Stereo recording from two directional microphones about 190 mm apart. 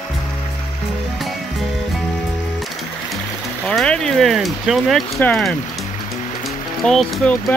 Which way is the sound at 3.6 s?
5° left (ahead or behind).